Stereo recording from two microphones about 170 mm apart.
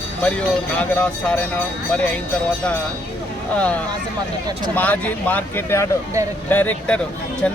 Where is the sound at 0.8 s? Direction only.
5° left (ahead or behind).